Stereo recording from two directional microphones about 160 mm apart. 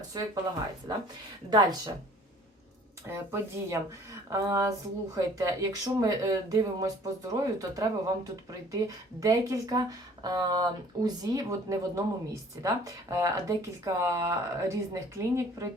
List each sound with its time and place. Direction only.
0.1 s speech: 25° right (ahead or behind)
3.1 s speech: 15° right (ahead or behind)